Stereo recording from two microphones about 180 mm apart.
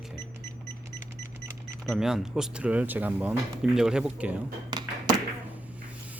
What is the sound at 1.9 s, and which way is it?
Speech, centre (ahead or behind).